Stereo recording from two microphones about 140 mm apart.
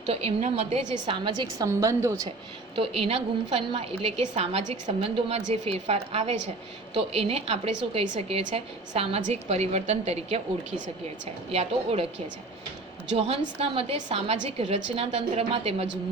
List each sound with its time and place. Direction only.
0.0 s a woman's voice: 45° right (ahead or behind)
1.0 s a woman's voice: 35° right (ahead or behind)
1.6 s a woman's voice: 20° right (ahead or behind)
2.7 s a woman's voice: 45° right (ahead or behind)
13.1 s a woman's voice: 50° right (ahead or behind)